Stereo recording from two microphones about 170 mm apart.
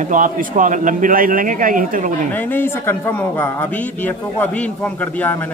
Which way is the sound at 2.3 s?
10° left (ahead or behind).